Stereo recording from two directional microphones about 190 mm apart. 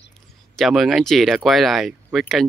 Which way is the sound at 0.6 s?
Centre (ahead or behind).